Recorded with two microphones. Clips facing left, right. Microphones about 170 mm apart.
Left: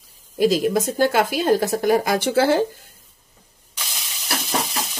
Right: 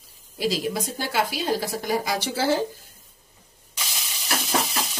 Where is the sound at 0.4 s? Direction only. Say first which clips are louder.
Left 8 dB; 50° left (ahead or behind).